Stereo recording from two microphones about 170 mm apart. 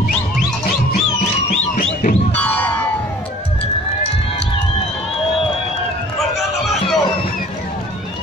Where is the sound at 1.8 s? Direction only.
55° left (ahead or behind).